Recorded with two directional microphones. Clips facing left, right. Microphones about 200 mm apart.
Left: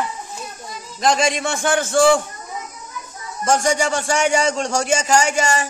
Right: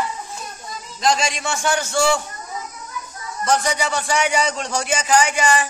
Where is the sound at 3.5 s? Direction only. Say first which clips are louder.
Left 3 dB; 50° left (ahead or behind).